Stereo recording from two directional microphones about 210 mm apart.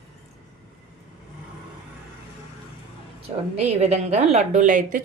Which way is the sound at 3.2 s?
30° right (ahead or behind).